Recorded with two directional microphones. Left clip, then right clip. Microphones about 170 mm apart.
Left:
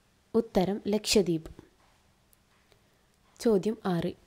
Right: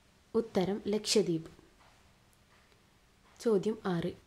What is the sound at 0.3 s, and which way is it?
A woman's voice, 35° left (ahead or behind).